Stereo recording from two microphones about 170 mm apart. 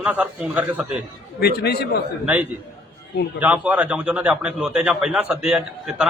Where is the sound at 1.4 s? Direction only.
70° left (ahead or behind).